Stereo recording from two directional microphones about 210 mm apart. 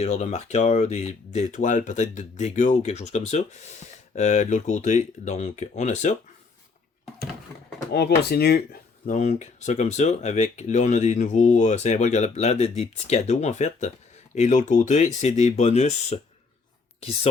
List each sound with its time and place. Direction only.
0.0 s speech: 35° left (ahead or behind)
7.9 s speech: 50° left (ahead or behind)
9.0 s speech: 35° left (ahead or behind)